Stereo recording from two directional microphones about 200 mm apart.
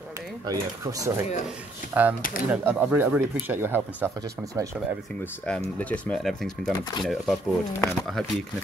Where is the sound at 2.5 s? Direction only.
10° right (ahead or behind).